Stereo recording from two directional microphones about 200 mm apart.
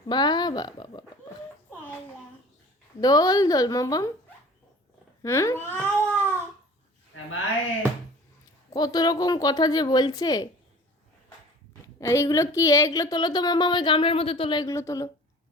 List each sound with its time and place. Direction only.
0.1 s speech: 20° left (ahead or behind)
3.0 s speech: 20° left (ahead or behind)
5.2 s speech: 15° left (ahead or behind)
8.7 s speech: 20° left (ahead or behind)
11.9 s speech: 15° left (ahead or behind)